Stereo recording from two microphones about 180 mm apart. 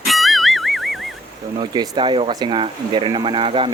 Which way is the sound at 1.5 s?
25° right (ahead or behind).